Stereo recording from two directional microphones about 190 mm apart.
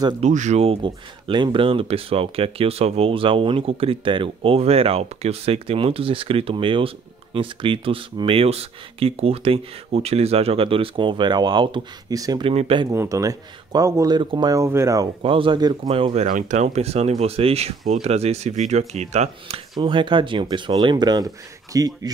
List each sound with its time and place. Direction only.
0.2 s speech: 40° right (ahead or behind)
12.9 s speech: 15° right (ahead or behind)
16.3 s speech: 40° right (ahead or behind); by 22.1 s 20° right (ahead or behind)